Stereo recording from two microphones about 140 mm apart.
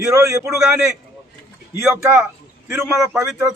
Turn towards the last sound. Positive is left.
turn(degrees=-20)  # may be behind; listen again after turning